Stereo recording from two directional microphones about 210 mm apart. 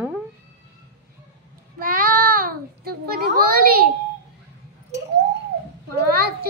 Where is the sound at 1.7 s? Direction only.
40° right (ahead or behind).